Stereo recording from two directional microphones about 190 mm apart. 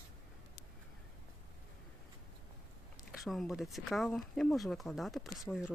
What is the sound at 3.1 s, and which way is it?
Speech, centre (ahead or behind).